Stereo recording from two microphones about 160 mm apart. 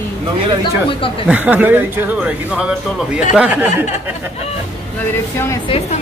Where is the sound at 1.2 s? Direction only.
10° right (ahead or behind).